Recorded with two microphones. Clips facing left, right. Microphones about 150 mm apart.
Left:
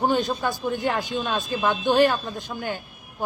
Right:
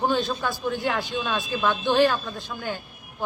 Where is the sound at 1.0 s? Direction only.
45° left (ahead or behind).